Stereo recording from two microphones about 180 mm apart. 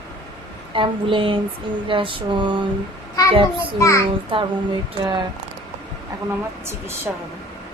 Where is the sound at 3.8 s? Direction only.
15° left (ahead or behind).